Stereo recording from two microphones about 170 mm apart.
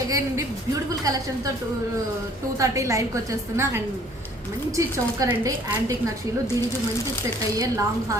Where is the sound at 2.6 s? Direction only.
20° right (ahead or behind).